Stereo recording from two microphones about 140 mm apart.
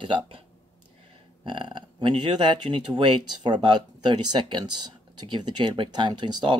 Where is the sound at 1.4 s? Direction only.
35° right (ahead or behind).